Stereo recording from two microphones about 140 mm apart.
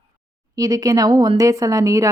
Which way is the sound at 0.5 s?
25° right (ahead or behind).